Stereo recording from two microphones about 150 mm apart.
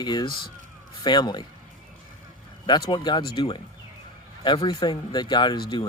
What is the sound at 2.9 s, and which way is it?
Speech, 30° left (ahead or behind).